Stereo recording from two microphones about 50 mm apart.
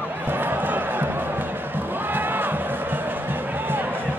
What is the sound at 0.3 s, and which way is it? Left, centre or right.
Crowd, right.